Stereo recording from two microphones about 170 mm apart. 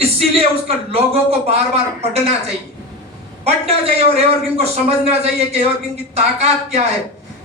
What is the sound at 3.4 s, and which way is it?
Speech, 35° right (ahead or behind).